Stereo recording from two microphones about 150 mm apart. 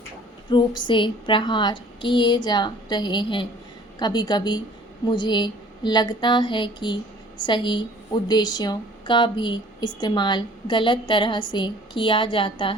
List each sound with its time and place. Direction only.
0.5 s a woman's voice: 30° left (ahead or behind)